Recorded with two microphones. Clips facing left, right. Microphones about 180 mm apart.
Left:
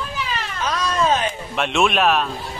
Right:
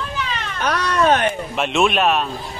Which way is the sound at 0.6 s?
65° right (ahead or behind).